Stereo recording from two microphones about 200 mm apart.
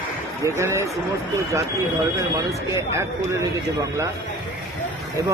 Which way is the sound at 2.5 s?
15° right (ahead or behind).